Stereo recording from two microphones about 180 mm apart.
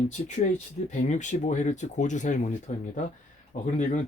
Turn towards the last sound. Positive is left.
turn(degrees=45)  # may be behind; listen again after turning